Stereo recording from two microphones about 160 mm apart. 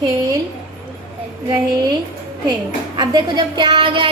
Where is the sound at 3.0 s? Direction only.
25° right (ahead or behind).